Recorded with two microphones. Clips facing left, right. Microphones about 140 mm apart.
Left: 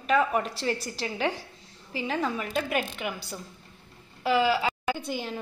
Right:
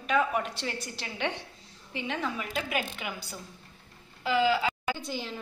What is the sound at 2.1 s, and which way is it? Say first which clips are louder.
Speech: left 4 dB; 35° left (ahead or behind).